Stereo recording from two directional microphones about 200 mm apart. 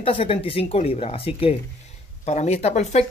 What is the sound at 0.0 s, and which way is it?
Speech, 25° left (ahead or behind).